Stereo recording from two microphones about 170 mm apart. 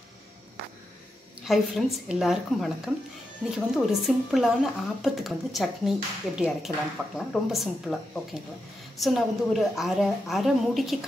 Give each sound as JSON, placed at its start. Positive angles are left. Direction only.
{"t": 1.4, "sound": "speech", "side_deg": 0}
{"t": 9.0, "sound": "speech", "side_deg": 0}